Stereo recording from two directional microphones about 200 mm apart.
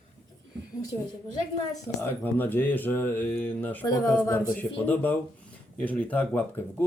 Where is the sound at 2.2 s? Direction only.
10° left (ahead or behind).